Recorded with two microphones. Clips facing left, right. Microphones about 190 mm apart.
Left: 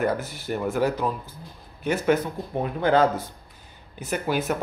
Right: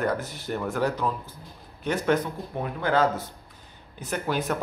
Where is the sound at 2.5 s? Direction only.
20° left (ahead or behind).